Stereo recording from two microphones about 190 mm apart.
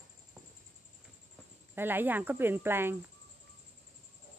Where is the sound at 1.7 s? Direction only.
10° right (ahead or behind).